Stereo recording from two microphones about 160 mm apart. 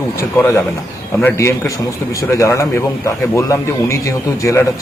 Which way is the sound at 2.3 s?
20° left (ahead or behind).